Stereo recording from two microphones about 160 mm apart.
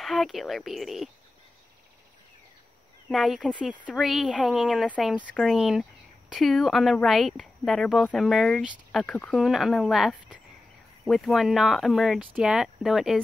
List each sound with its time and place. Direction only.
0.0 s speech: centre (ahead or behind)
3.1 s speech: centre (ahead or behind)